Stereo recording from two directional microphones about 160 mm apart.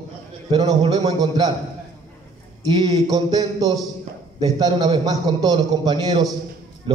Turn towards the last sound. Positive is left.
turn(degrees=-25)  # may be behind; listen again after turning